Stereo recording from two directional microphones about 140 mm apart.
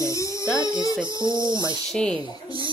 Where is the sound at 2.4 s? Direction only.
35° right (ahead or behind).